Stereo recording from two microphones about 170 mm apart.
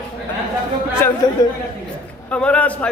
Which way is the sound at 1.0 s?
15° left (ahead or behind).